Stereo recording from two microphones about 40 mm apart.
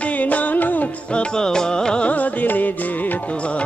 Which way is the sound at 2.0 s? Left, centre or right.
Left.